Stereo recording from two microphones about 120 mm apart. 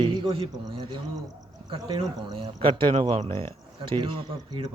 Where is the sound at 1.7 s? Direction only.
40° right (ahead or behind).